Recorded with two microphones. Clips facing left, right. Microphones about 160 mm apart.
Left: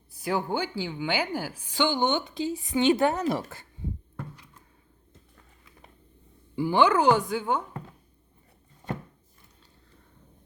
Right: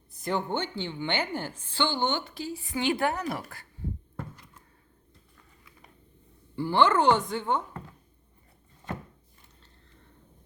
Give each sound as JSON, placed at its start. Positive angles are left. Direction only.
{"t": 0.1, "sound": "a woman's voice", "side_deg": 5}
{"t": 6.6, "sound": "a woman's voice", "side_deg": 10}